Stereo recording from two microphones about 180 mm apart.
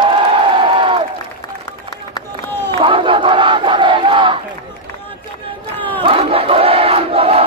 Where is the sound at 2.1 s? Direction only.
15° left (ahead or behind).